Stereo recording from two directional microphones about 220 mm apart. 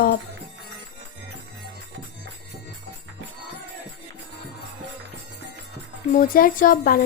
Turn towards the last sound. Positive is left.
turn(degrees=40)  # may be behind; listen again after turning